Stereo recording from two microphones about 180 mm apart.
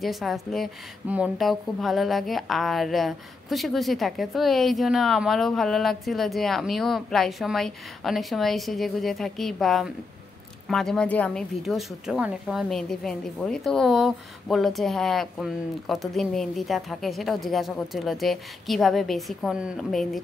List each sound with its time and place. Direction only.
0.0 s a woman's voice: centre (ahead or behind)